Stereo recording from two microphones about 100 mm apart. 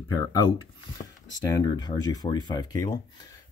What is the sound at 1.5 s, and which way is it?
Speech, 40° left (ahead or behind).